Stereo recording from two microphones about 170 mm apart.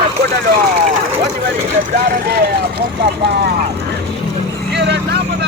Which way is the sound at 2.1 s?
65° right (ahead or behind).